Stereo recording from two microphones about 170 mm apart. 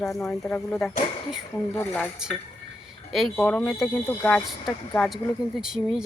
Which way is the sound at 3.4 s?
10° left (ahead or behind).